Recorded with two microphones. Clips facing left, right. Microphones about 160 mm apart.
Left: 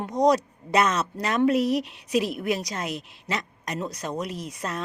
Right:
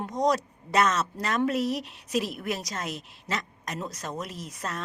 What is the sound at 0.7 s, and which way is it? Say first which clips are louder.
Speech: left 2 dB; 15° left (ahead or behind).